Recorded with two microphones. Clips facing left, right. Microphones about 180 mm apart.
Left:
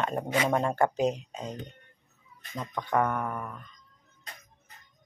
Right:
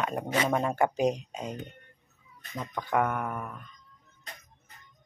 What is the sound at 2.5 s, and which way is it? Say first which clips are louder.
Speech: even; 5° right (ahead or behind).